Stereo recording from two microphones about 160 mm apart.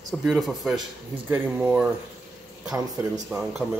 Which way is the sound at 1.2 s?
15° right (ahead or behind).